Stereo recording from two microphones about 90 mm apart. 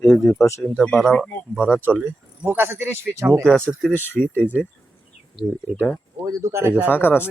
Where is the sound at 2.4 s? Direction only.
20° right (ahead or behind).